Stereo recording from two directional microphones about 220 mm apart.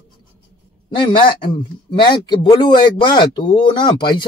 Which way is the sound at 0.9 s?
20° left (ahead or behind).